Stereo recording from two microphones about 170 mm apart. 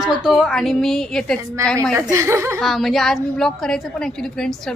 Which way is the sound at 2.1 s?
15° right (ahead or behind).